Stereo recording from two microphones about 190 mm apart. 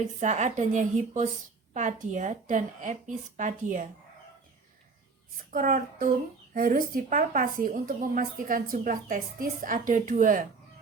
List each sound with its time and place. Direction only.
0.2 s speech: 40° right (ahead or behind)
5.5 s speech: 45° right (ahead or behind)